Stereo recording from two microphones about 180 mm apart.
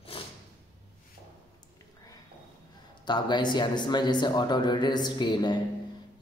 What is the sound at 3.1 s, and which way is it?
Speech, 25° left (ahead or behind).